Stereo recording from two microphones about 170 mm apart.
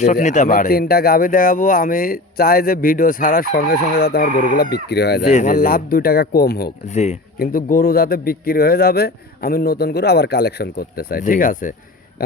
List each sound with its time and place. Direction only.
0.0 s speech: 45° left (ahead or behind); by 5.2 s 75° left (ahead or behind)
5.2 s speech: 45° left (ahead or behind); by 6.7 s 65° left (ahead or behind)
6.8 s speech: 40° left (ahead or behind)
7.3 s speech: 55° left (ahead or behind)